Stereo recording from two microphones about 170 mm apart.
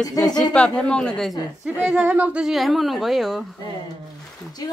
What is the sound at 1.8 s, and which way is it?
A woman's voice, 5° right (ahead or behind).